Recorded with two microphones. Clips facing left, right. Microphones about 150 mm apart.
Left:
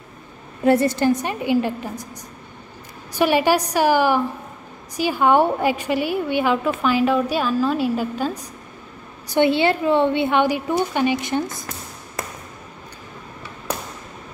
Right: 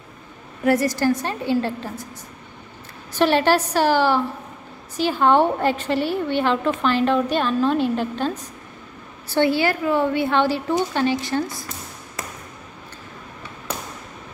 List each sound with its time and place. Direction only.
0.7 s a woman's voice: 25° left (ahead or behind)
3.1 s a woman's voice: 10° left (ahead or behind)
9.3 s speech: 20° left (ahead or behind)